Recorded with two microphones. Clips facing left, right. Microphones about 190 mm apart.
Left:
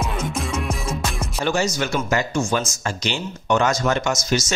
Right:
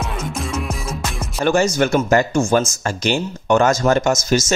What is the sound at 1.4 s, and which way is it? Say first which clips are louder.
Speech: right 6 dB; 55° right (ahead or behind).